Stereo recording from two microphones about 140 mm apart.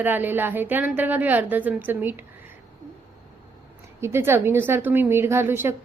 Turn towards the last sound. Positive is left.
turn(degrees=-15)  # may be behind; listen again after turning